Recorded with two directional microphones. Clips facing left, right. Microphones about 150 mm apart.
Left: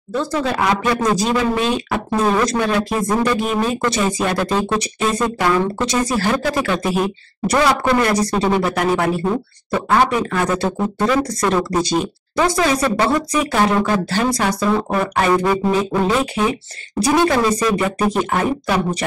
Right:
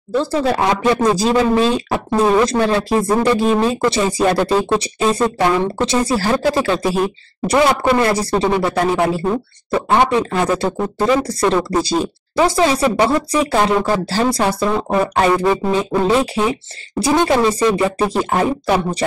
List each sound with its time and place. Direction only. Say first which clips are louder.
0.2 s speech: right 2 dB; 30° right (ahead or behind)